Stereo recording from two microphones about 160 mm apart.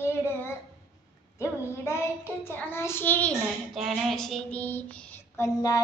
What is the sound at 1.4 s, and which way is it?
Child singing, 15° left (ahead or behind).